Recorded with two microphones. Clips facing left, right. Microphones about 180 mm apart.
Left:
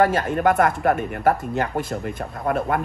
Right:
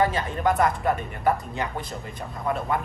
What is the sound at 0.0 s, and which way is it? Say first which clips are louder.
A man's voice: left 5 dB; 60° left (ahead or behind).